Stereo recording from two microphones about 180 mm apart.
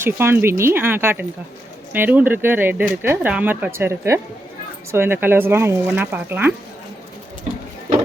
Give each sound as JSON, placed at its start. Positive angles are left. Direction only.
{"t": 0.0, "sound": "speech", "side_deg": -15}